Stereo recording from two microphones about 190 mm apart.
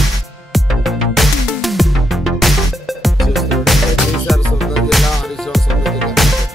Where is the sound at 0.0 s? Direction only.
Centre (ahead or behind).